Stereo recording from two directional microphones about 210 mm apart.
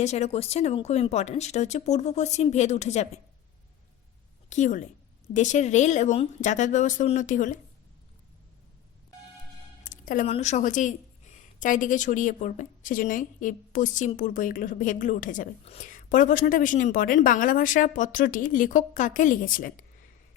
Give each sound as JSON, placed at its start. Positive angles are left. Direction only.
{"t": 0.0, "sound": "speech", "side_deg": 30}
{"t": 4.4, "sound": "a woman's voice", "side_deg": 35}
{"t": 9.8, "sound": "music", "side_deg": 40}
{"t": 10.3, "sound": "speech", "side_deg": 35}